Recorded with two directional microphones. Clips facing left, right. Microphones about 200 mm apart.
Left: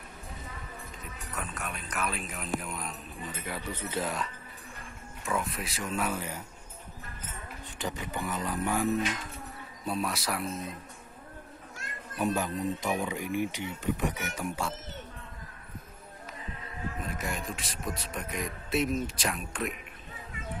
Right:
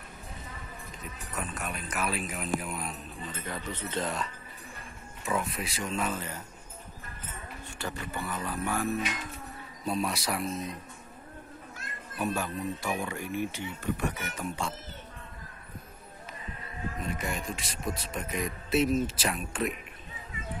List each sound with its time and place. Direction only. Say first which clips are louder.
1.3 s speech: right 2 dB; centre (ahead or behind)
3.2 s speech: left 1 dB; 10° left (ahead or behind)
7.6 s speech: left 2 dB; 15° left (ahead or behind)
9.8 s speech: right 1 dB; centre (ahead or behind)
12.4 s speech: left 2 dB; 15° left (ahead or behind)
17.0 s speech: right 2 dB; centre (ahead or behind)